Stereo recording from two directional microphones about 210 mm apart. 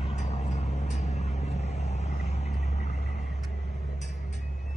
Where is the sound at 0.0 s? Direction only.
30° left (ahead or behind).